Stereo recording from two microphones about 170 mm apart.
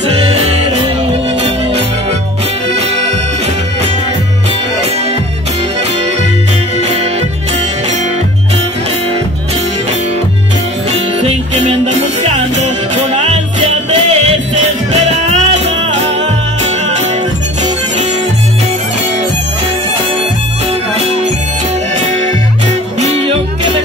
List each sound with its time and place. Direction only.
0.2 s music: 35° right (ahead or behind)
6.8 s music: 40° right (ahead or behind)
10.9 s music: 40° right (ahead or behind)
22.9 s music: 40° right (ahead or behind)